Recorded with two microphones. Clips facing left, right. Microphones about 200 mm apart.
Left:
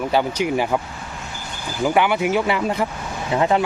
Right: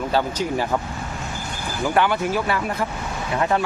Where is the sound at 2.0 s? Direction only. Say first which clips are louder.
Left 2 dB; 15° left (ahead or behind).